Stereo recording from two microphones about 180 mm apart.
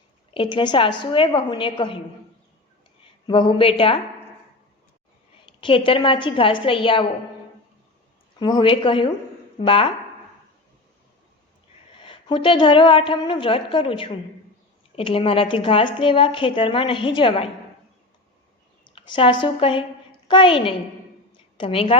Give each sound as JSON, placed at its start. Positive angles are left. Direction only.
{"t": 0.3, "sound": "a woman's voice", "side_deg": 25}
{"t": 3.2, "sound": "a woman's voice", "side_deg": 30}
{"t": 5.5, "sound": "a woman's voice", "side_deg": 30}
{"t": 8.4, "sound": "a woman's voice", "side_deg": 25}
{"t": 12.0, "sound": "a woman's voice", "side_deg": 30}
{"t": 18.9, "sound": "a woman's voice", "side_deg": 30}
{"t": 21.3, "sound": "a sound", "side_deg": 30}